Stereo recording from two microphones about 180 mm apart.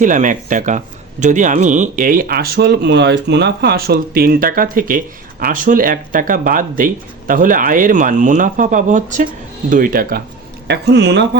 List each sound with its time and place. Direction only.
0.0 s speech: 45° right (ahead or behind)
10.7 s speech: 70° right (ahead or behind)